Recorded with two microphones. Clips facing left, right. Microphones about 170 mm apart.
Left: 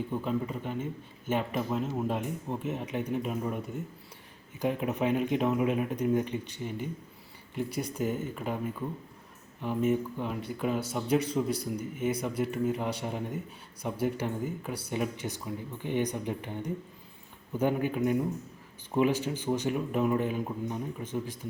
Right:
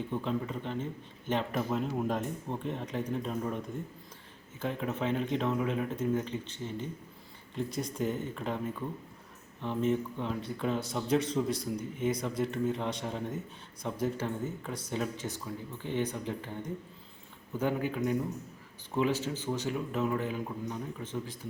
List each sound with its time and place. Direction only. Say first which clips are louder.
0.1 s speech: even; 10° left (ahead or behind)
4.6 s speech: left 4 dB; 15° left (ahead or behind)
7.9 s speech: left 1 dB; 10° left (ahead or behind)